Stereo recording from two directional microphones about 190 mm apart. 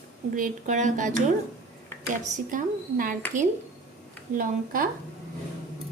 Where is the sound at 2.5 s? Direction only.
45° right (ahead or behind).